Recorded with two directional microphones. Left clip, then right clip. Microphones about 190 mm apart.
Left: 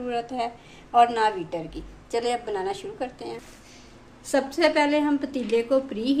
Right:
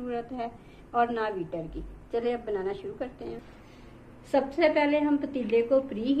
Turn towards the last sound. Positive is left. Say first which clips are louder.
# left 2 dB
turn(degrees=45)  # may be behind; listen again after turning